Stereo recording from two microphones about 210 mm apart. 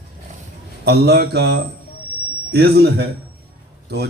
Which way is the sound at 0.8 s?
50° right (ahead or behind).